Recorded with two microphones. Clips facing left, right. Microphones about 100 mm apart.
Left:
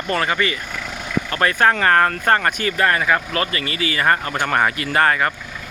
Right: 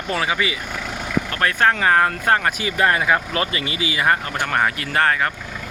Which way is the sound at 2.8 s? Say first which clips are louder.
Right 1 dB; 20° right (ahead or behind).